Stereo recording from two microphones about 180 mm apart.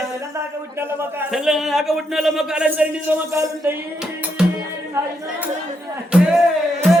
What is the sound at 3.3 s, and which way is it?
Speech, 15° right (ahead or behind).